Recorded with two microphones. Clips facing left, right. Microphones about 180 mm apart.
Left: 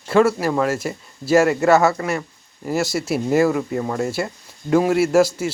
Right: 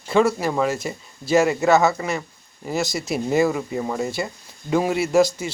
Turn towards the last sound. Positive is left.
turn(degrees=5)  # may be behind; listen again after turning